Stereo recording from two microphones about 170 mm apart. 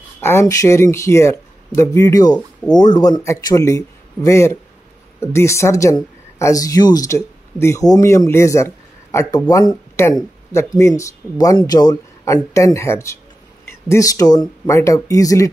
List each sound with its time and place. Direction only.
0.2 s a man's voice: 15° left (ahead or behind)